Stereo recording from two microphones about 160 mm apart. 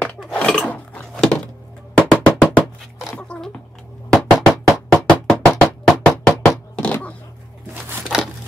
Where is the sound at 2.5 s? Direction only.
Centre (ahead or behind).